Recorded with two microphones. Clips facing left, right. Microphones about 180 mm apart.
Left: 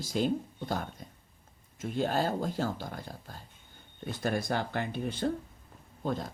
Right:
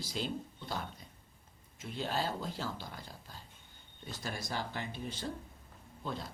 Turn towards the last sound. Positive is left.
turn(degrees=45)  # may be behind; listen again after turning